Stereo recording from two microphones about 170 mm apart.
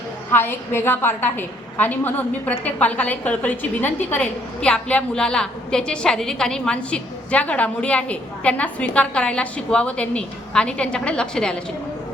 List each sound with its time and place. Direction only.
0.3 s a woman's voice: 10° left (ahead or behind)